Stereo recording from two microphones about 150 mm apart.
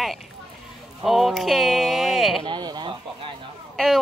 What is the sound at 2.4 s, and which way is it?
Speech, 30° right (ahead or behind).